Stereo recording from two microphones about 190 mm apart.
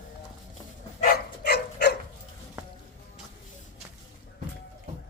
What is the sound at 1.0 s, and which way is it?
Dog, 55° left (ahead or behind).